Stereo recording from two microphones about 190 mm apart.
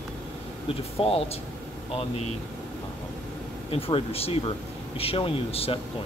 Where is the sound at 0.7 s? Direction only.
30° left (ahead or behind).